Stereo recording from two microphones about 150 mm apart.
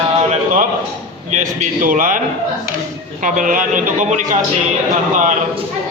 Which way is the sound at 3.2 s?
60° right (ahead or behind).